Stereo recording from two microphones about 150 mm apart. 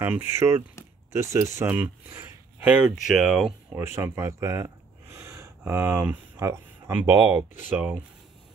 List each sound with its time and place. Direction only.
0.0 s speech: 15° right (ahead or behind)
3.7 s speech: 15° right (ahead or behind)